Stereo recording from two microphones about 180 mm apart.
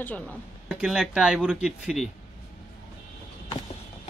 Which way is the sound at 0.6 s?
5° right (ahead or behind).